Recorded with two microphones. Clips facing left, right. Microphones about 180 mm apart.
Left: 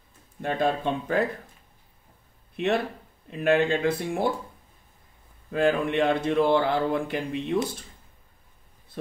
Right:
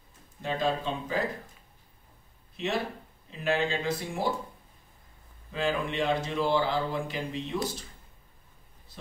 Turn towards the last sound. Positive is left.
turn(degrees=60)  # may be behind; listen again after turning